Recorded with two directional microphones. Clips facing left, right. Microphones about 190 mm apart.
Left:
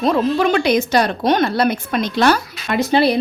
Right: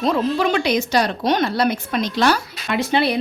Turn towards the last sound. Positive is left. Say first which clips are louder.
# left 4 dB
turn(degrees=35)  # may be behind; listen again after turning